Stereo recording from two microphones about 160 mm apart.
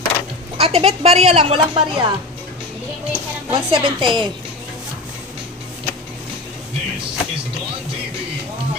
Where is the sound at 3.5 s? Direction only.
30° right (ahead or behind).